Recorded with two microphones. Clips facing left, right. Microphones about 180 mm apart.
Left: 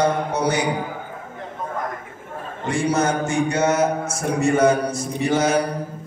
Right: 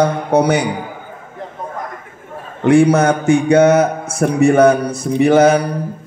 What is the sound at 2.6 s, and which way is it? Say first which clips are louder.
Speech: right 10 dB; 60° right (ahead or behind).